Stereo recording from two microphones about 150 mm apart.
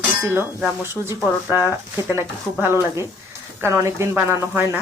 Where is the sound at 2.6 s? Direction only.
15° right (ahead or behind).